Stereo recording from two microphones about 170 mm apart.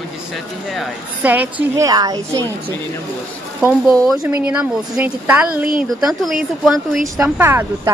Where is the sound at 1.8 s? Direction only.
25° right (ahead or behind).